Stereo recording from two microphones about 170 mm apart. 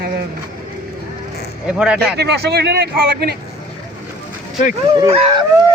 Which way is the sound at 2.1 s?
75° right (ahead or behind).